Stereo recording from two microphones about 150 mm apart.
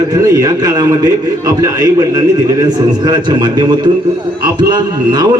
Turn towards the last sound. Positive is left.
turn(degrees=-25)  # may be behind; listen again after turning